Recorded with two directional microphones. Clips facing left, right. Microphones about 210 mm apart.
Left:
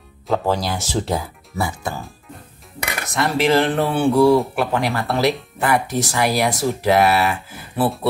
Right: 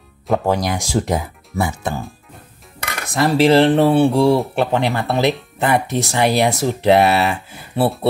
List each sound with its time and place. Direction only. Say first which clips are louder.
0.3 s speech: right 2 dB; 15° right (ahead or behind)
3.1 s cutlery: right 5 dB; 35° right (ahead or behind)
3.9 s speech: right 1 dB; 25° right (ahead or behind)